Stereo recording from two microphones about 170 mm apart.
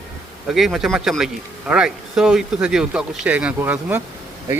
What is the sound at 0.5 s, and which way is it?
Speech, centre (ahead or behind).